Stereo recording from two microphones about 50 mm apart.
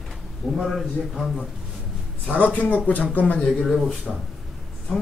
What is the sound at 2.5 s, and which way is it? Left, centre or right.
Speech, left.